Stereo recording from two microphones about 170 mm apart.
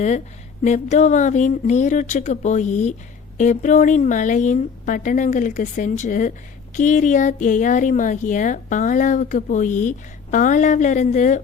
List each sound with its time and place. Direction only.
0.6 s speech: 45° left (ahead or behind)